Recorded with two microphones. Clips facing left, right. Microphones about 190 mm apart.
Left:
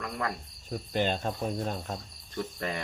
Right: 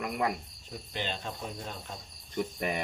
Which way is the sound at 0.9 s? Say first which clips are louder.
Left 8 dB; 45° left (ahead or behind).